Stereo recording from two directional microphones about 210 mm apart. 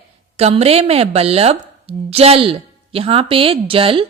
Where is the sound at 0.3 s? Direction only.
30° right (ahead or behind).